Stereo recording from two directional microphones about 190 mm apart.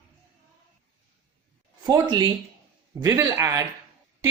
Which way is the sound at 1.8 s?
25° right (ahead or behind).